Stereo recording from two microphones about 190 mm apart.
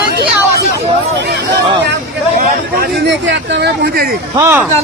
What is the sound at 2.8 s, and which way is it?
Speech, 70° right (ahead or behind).